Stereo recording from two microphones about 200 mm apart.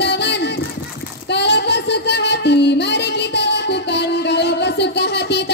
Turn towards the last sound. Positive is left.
turn(degrees=55)  # may be behind; listen again after turning